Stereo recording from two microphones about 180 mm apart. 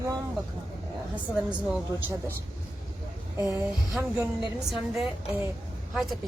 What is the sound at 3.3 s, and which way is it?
Speech, 15° right (ahead or behind).